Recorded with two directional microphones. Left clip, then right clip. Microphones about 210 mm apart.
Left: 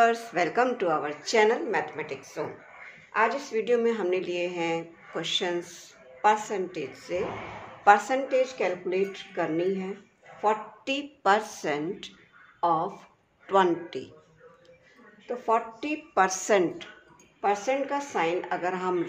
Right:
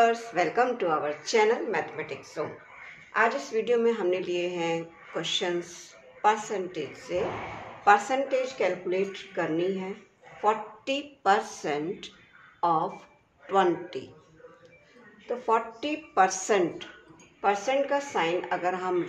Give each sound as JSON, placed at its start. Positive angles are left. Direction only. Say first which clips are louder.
{"t": 0.0, "sound": "a woman's voice", "louder": "even", "side_deg": 35}
{"t": 15.2, "sound": "speech", "louder": "even", "side_deg": 25}